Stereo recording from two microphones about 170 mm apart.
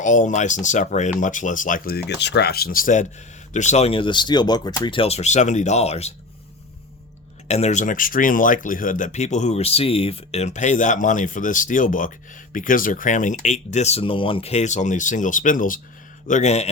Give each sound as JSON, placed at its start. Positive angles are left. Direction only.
{"t": 0.0, "sound": "speech", "side_deg": 50}
{"t": 2.2, "sound": "speech", "side_deg": 80}
{"t": 7.4, "sound": "speech", "side_deg": 40}